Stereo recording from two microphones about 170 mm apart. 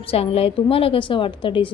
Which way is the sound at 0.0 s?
35° left (ahead or behind).